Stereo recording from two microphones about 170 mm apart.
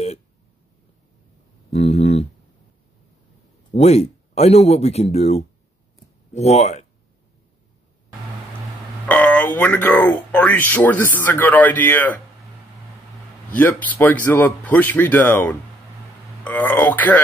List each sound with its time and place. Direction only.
1.7 s speech: 40° left (ahead or behind)
3.7 s speech: 40° left (ahead or behind)
9.0 s speech: 5° left (ahead or behind)
13.6 s speech: 10° left (ahead or behind)